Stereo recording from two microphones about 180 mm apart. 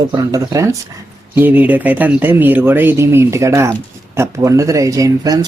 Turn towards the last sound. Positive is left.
turn(degrees=-20)  # may be behind; listen again after turning